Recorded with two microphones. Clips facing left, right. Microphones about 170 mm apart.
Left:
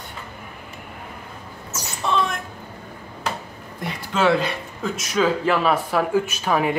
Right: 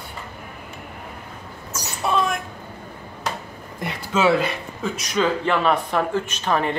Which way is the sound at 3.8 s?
5° right (ahead or behind).